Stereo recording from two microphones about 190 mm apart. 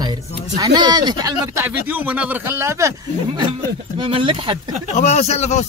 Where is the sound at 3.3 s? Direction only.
25° right (ahead or behind).